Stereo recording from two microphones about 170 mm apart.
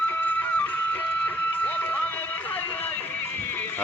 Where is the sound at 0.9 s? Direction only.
10° left (ahead or behind).